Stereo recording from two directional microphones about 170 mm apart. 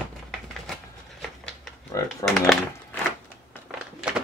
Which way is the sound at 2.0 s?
20° left (ahead or behind).